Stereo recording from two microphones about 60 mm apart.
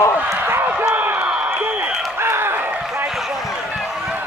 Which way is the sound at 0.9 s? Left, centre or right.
Right.